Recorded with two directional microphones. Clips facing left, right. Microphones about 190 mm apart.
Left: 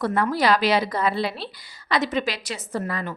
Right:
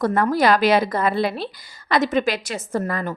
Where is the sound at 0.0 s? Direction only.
45° right (ahead or behind).